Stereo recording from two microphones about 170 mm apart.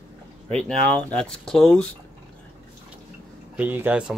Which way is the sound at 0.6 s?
5° left (ahead or behind).